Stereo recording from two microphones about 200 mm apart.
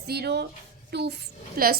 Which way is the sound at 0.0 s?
55° right (ahead or behind).